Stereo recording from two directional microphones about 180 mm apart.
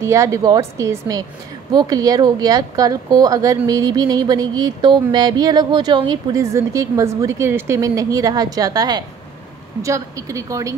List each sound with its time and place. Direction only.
0.0 s a woman's voice: 15° right (ahead or behind)